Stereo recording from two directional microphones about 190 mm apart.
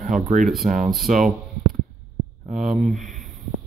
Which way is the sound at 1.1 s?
40° right (ahead or behind).